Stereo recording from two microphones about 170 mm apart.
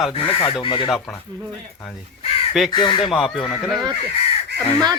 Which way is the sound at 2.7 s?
30° left (ahead or behind).